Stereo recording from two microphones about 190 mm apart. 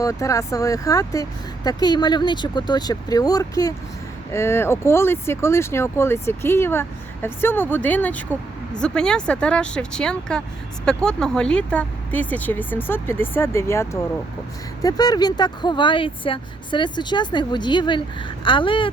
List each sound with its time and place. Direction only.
0.0 s speech: 15° left (ahead or behind)